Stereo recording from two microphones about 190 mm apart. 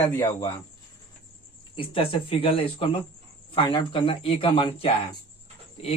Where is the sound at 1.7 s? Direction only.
30° left (ahead or behind).